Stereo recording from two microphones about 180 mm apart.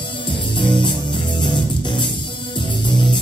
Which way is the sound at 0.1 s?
25° left (ahead or behind).